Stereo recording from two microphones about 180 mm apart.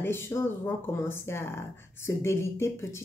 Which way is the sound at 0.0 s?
15° left (ahead or behind).